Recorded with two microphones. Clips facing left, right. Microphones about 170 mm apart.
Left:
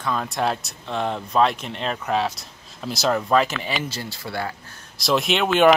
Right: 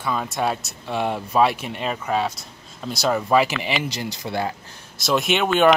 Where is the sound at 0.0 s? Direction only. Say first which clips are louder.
Even; 5° right (ahead or behind); by 4.6 s 20° right (ahead or behind).